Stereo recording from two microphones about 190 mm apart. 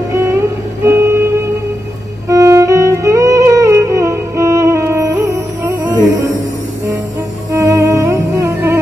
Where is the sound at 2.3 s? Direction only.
15° right (ahead or behind).